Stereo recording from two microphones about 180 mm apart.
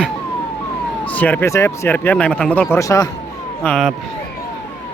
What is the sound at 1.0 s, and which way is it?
Speech, 10° left (ahead or behind).